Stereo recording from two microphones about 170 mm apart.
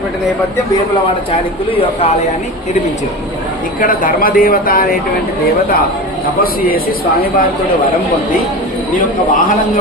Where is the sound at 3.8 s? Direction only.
55° left (ahead or behind).